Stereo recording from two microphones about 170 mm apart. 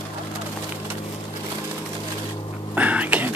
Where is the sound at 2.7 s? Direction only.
10° right (ahead or behind).